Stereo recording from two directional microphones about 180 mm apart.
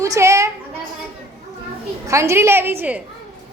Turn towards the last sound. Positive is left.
turn(degrees=-10)  # may be behind; listen again after turning